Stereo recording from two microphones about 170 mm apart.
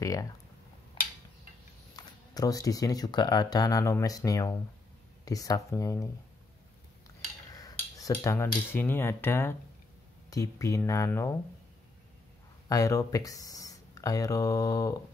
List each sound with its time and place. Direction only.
0.0 s speech: 20° left (ahead or behind)
2.0 s speech: 20° left (ahead or behind)
7.5 s cutlery: 20° left (ahead or behind)
10.3 s speech: 20° left (ahead or behind)
12.6 s speech: 20° left (ahead or behind)